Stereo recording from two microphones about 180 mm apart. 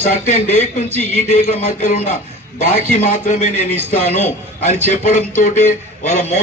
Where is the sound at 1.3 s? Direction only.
40° left (ahead or behind).